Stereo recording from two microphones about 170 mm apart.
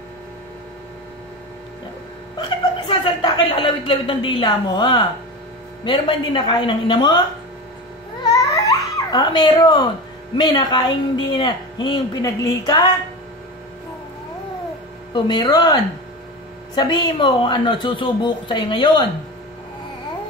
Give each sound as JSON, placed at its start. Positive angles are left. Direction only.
{"t": 2.9, "sound": "a man's voice", "side_deg": 25}
{"t": 8.3, "sound": "baby cry", "side_deg": 20}
{"t": 10.3, "sound": "a man's voice", "side_deg": 25}
{"t": 15.1, "sound": "a man's voice", "side_deg": 25}